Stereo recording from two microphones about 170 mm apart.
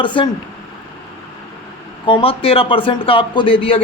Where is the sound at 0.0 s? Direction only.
30° left (ahead or behind).